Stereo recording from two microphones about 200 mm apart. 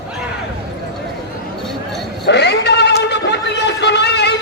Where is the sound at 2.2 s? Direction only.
55° left (ahead or behind).